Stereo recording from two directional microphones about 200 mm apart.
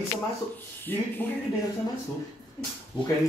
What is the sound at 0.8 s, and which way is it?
Speech, 10° left (ahead or behind).